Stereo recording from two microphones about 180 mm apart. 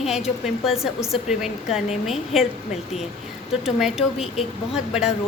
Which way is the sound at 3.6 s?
5° right (ahead or behind).